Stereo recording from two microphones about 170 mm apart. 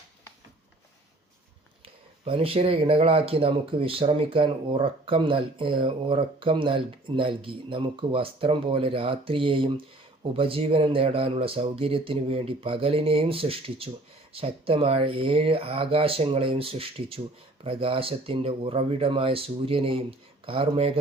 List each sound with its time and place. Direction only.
1.8 s speech: 35° right (ahead or behind)